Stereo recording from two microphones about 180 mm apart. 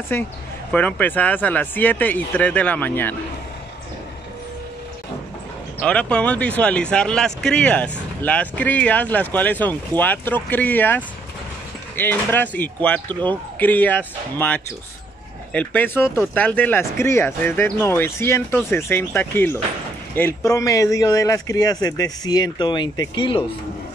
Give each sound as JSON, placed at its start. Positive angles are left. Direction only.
{"t": 0.7, "sound": "speech", "side_deg": 10}
{"t": 5.8, "sound": "speech", "side_deg": 5}